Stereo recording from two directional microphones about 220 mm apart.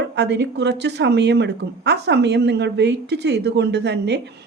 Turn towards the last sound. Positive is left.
turn(degrees=-50)  # may be behind; listen again after turning